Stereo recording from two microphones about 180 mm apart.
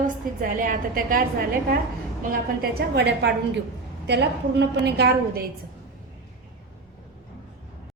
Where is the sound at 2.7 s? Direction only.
65° right (ahead or behind).